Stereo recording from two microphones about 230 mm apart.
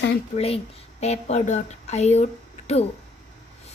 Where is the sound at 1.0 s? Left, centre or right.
Left.